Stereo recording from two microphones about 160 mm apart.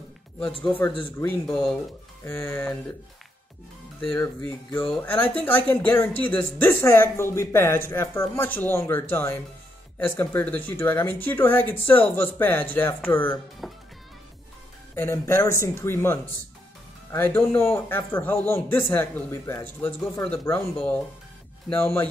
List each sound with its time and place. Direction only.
1.5 s speech: centre (ahead or behind)
2.2 s speech: 15° left (ahead or behind)
4.8 s speech: 5° left (ahead or behind)
13.6 s speech: centre (ahead or behind)
15.0 s speech: 15° left (ahead or behind)